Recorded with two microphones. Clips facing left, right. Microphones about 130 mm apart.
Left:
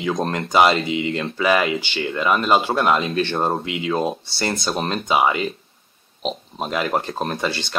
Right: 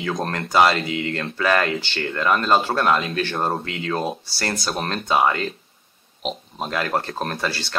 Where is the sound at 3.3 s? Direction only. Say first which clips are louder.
Left 2 dB; centre (ahead or behind).